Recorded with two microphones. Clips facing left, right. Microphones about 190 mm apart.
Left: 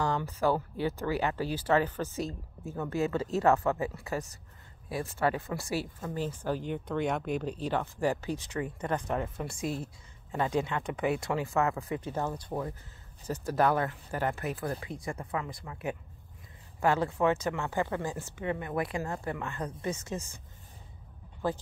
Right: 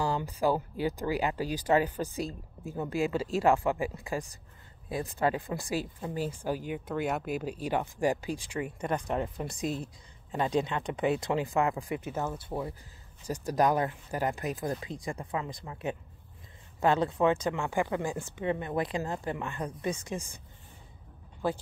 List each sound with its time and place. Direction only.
0.0 s speech: 10° right (ahead or behind)
21.4 s speech: 10° right (ahead or behind)